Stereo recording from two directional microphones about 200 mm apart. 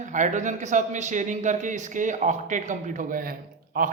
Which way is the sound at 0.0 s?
40° right (ahead or behind).